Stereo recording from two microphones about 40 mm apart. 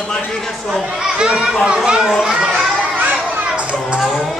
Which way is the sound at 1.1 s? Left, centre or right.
Centre.